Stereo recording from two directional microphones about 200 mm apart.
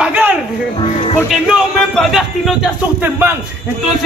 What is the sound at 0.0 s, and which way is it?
Music, 10° right (ahead or behind).